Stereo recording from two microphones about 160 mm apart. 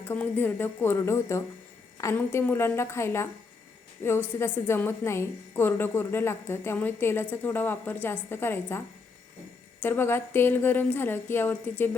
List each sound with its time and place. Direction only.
0.0 s speech: 15° left (ahead or behind)
9.8 s speech: 15° left (ahead or behind)